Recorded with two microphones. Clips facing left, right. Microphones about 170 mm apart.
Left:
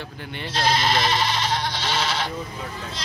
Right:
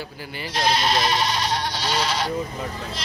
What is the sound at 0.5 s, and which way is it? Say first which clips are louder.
Speech: even; 15° right (ahead or behind).